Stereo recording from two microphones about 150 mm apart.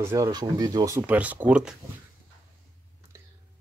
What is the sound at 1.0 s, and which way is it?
Speech, 10° right (ahead or behind).